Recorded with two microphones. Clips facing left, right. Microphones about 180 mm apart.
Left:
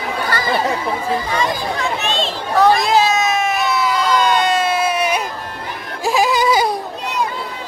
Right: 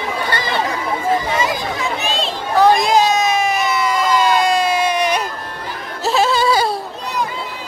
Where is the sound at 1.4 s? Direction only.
Centre (ahead or behind).